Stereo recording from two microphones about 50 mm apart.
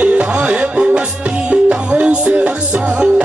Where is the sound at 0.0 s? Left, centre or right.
Right.